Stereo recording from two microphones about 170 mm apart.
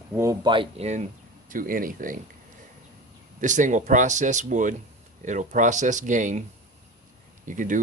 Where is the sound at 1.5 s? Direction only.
55° right (ahead or behind).